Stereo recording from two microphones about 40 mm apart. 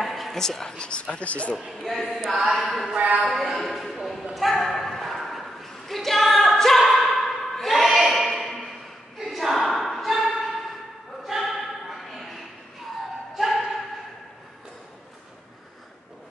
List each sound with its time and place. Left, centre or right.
0.0 s a sound: centre
0.4 s speech: centre
1.1 s a man's voice: left
1.7 s speech: centre
2.3 s chant: centre
2.6 s a woman's voice: centre
4.2 s a sound: centre
11.2 s choir: centre
13.3 s a sound: centre